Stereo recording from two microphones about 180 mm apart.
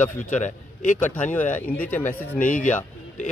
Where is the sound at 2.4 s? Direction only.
45° left (ahead or behind).